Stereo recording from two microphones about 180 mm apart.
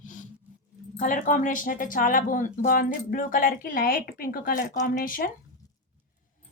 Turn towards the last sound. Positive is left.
turn(degrees=50)  # may be behind; listen again after turning